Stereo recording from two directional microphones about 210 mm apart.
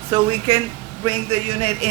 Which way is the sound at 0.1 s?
25° right (ahead or behind).